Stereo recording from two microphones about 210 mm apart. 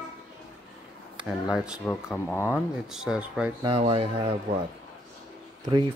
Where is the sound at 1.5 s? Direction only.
5° right (ahead or behind).